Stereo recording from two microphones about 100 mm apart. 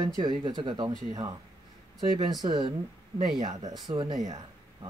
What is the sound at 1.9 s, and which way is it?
Speech, 45° right (ahead or behind).